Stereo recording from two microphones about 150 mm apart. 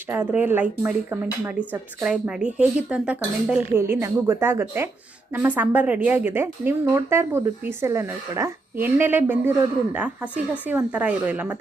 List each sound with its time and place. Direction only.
0.1 s speech: 10° right (ahead or behind)